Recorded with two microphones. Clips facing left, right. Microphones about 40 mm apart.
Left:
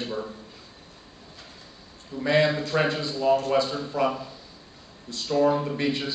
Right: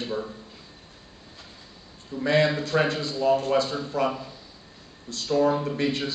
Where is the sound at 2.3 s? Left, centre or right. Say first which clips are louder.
Even; centre.